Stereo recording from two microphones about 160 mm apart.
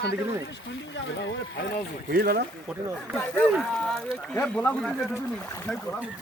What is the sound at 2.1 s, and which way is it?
Speech, 70° right (ahead or behind).